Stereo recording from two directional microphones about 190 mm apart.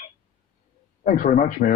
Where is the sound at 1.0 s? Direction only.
45° left (ahead or behind).